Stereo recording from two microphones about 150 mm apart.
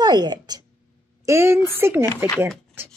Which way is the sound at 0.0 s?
30° right (ahead or behind).